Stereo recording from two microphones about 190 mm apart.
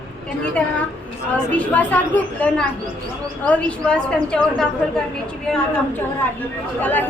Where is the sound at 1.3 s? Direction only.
5° left (ahead or behind).